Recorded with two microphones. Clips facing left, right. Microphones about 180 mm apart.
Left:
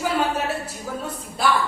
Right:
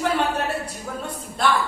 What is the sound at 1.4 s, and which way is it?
Speech, 5° left (ahead or behind).